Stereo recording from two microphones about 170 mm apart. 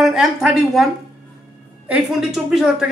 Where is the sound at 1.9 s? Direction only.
5° right (ahead or behind).